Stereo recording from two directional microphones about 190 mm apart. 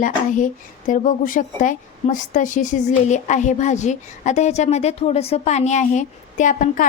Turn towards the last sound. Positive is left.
turn(degrees=45)  # may be behind; listen again after turning